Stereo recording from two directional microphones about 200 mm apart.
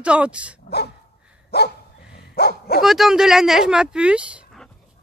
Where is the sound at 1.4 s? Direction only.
55° left (ahead or behind).